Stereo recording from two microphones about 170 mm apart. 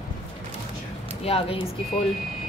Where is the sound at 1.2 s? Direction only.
35° left (ahead or behind).